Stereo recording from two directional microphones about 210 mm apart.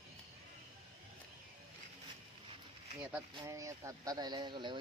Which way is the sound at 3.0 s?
10° right (ahead or behind).